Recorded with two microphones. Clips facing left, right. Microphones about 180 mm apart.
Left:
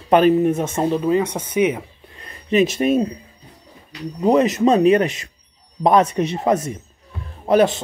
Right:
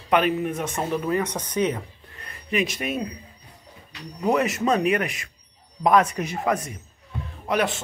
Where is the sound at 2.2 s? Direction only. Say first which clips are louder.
Left 8 dB; 25° left (ahead or behind).